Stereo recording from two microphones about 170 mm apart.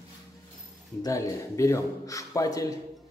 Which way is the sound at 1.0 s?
20° left (ahead or behind).